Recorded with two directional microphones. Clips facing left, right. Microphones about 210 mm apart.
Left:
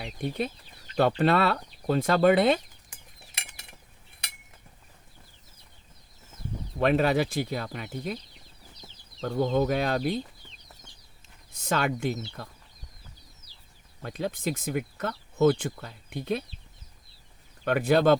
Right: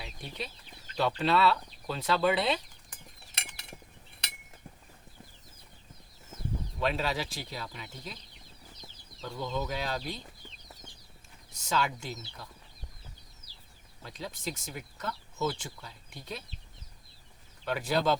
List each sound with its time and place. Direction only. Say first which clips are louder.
0.0 s speech: left 10 dB; 50° left (ahead or behind)
6.7 s speech: left 9 dB; 55° left (ahead or behind)
9.2 s speech: left 10 dB; 55° left (ahead or behind)
11.5 s speech: left 4 dB; 55° left (ahead or behind)
14.0 s speech: left 8 dB; 55° left (ahead or behind)
17.7 s speech: left 8 dB; 55° left (ahead or behind)